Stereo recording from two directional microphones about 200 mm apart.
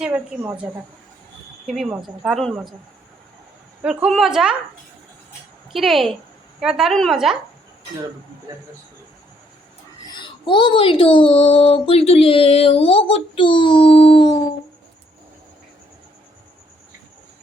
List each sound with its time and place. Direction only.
0.0 s a woman's voice: 5° right (ahead or behind)
3.8 s a woman's voice: 5° right (ahead or behind)
5.7 s a woman's voice: centre (ahead or behind)
10.2 s a child's voice: 25° left (ahead or behind)